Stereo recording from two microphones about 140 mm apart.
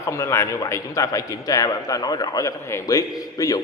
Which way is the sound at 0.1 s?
20° left (ahead or behind).